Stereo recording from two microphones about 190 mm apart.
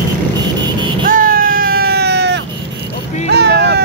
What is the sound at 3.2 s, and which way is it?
Vehicle, 60° right (ahead or behind).